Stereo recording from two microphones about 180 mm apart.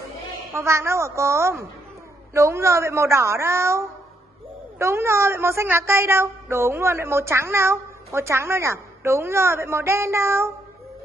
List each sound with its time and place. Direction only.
0.6 s a woman's voice: 15° right (ahead or behind)